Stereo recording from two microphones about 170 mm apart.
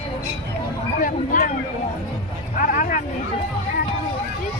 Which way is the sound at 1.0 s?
50° left (ahead or behind).